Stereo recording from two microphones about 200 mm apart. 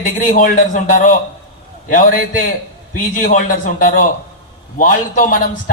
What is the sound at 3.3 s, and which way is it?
A man's voice, 40° left (ahead or behind).